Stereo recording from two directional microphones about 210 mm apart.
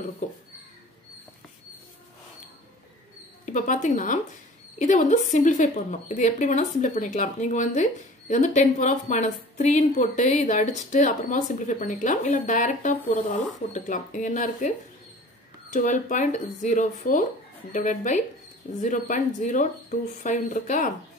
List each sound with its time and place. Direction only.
3.4 s a woman's voice: 35° left (ahead or behind)
15.7 s a woman's voice: 35° left (ahead or behind)